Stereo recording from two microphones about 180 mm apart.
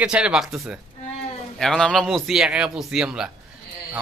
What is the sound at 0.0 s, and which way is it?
A man's voice, 5° right (ahead or behind).